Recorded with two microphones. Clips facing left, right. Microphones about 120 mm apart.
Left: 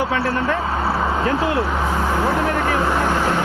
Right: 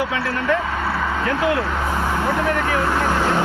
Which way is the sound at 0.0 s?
35° left (ahead or behind).